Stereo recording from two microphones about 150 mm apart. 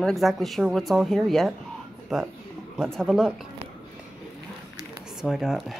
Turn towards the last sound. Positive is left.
turn(degrees=0)  # may be behind; listen again after turning